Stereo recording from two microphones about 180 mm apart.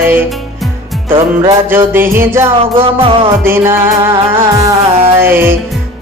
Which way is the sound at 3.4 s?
10° right (ahead or behind).